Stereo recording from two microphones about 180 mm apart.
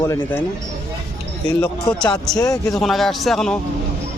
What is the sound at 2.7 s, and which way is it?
Speech, centre (ahead or behind).